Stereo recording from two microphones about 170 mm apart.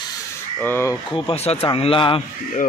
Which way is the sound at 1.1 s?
35° left (ahead or behind).